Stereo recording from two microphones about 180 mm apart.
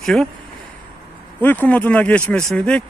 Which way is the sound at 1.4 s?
10° left (ahead or behind).